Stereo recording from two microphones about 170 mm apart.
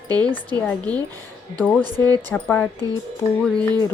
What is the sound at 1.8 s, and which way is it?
Speech, 25° right (ahead or behind).